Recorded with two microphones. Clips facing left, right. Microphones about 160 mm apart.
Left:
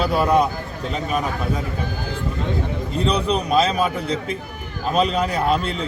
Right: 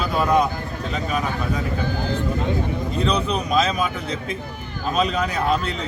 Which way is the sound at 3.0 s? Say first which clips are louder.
Left 3 dB; 30° left (ahead or behind).